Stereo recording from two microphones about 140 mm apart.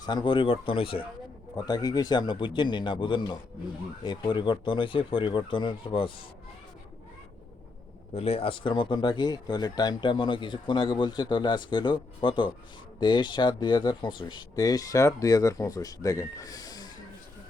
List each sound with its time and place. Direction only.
0.0 s speech: 30° left (ahead or behind)
1.5 s speech: 30° left (ahead or behind)
8.1 s speech: 45° left (ahead or behind); by 16.9 s 25° left (ahead or behind)